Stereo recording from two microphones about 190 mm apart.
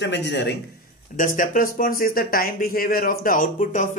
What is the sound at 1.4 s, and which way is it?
Speech, 45° left (ahead or behind).